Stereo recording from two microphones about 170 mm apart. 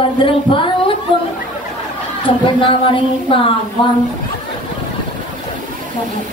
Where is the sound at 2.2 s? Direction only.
30° left (ahead or behind).